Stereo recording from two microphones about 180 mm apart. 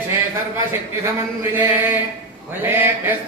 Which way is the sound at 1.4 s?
10° right (ahead or behind).